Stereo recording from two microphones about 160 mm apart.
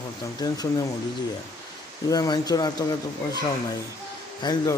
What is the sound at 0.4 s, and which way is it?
Speech, 25° left (ahead or behind).